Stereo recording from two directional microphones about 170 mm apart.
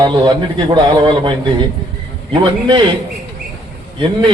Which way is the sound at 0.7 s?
25° right (ahead or behind).